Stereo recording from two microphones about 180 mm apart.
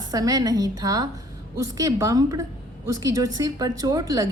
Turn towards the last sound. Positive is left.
turn(degrees=-20)  # may be behind; listen again after turning